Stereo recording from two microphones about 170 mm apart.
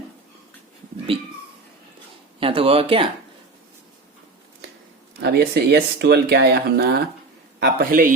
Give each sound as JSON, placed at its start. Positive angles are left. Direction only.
{"t": 2.4, "sound": "speech", "side_deg": -30}
{"t": 5.2, "sound": "a man's voice", "side_deg": -75}